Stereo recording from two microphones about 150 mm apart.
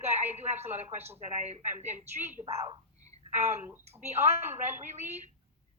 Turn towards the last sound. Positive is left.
turn(degrees=-50)  # may be behind; listen again after turning